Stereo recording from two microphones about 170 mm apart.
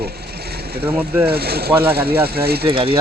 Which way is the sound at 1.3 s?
70° right (ahead or behind).